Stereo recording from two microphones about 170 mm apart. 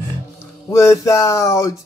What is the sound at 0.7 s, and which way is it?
Music, 15° left (ahead or behind).